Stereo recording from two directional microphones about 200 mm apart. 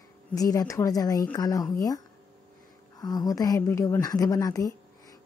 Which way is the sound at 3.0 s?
20° left (ahead or behind).